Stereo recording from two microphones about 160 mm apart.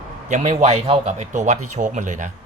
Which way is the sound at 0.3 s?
45° right (ahead or behind).